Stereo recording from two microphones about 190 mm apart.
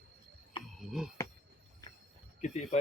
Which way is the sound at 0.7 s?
Centre (ahead or behind).